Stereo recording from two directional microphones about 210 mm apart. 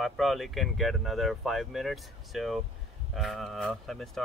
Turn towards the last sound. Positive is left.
turn(degrees=0)  # may be behind; listen again after turning